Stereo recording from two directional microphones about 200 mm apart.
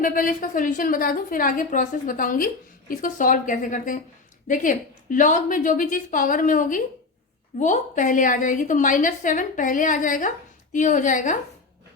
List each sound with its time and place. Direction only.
0.0 s a woman's voice: 45° left (ahead or behind)